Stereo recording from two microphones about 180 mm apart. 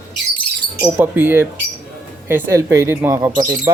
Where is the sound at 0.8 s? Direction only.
10° right (ahead or behind).